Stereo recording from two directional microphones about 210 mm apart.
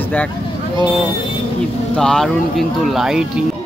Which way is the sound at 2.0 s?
Centre (ahead or behind).